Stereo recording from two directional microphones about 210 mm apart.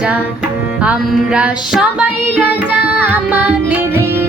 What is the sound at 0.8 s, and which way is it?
Music, 5° right (ahead or behind).